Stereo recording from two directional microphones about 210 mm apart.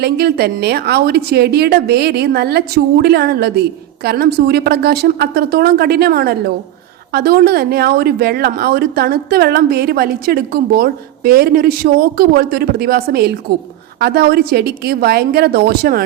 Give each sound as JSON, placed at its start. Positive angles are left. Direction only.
{"t": 0.0, "sound": "a woman's voice", "side_deg": -50}